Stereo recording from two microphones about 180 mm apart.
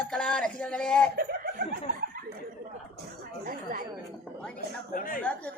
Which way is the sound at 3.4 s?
55° right (ahead or behind).